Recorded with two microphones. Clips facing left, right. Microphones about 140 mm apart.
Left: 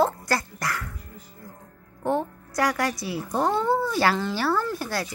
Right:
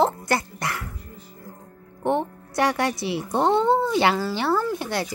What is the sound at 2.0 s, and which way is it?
A woman's voice, 25° right (ahead or behind).